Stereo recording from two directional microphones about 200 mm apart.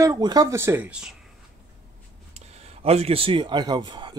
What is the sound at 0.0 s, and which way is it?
Speech, 20° right (ahead or behind).